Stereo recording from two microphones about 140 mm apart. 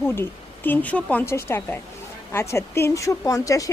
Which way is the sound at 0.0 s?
15° left (ahead or behind).